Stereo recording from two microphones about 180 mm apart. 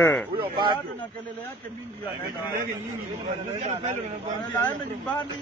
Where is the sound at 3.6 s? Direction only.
40° right (ahead or behind).